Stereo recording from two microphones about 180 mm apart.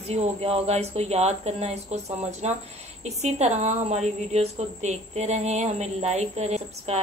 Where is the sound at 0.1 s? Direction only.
35° right (ahead or behind).